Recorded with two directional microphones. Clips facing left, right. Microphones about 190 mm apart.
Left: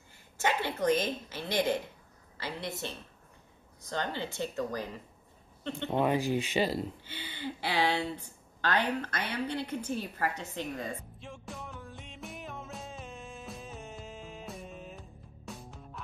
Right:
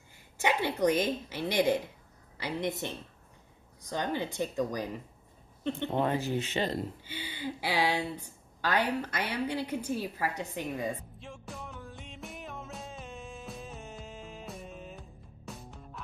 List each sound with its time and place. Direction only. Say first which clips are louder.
0.4 s a woman's voice: right 3 dB; 15° right (ahead or behind)
3.9 s a woman's voice: right 2 dB; 15° right (ahead or behind)
5.9 s speech: left 3 dB; 10° left (ahead or behind)
7.1 s a woman's voice: right 2 dB; 10° right (ahead or behind)
11.1 s music: even; centre (ahead or behind)